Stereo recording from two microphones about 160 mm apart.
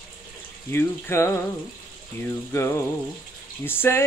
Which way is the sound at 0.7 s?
15° left (ahead or behind).